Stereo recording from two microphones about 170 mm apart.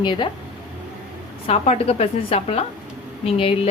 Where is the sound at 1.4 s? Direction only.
35° left (ahead or behind).